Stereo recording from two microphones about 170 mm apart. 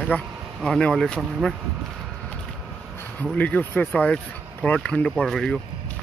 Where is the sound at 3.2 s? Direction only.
10° left (ahead or behind).